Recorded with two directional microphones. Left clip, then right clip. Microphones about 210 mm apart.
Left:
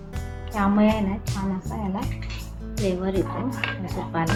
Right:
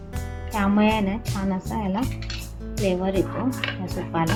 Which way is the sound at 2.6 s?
Centre (ahead or behind).